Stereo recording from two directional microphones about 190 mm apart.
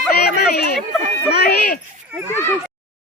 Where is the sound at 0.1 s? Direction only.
55° left (ahead or behind).